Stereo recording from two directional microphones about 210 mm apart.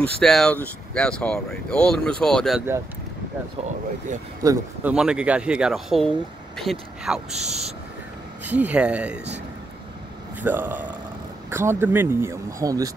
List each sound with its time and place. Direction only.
0.0 s speech: centre (ahead or behind)
4.4 s speech: 15° right (ahead or behind)
4.9 s speech: 5° right (ahead or behind)
7.2 s speech: 30° right (ahead or behind)
8.5 s speech: 5° right (ahead or behind)
10.4 s speech: 10° right (ahead or behind)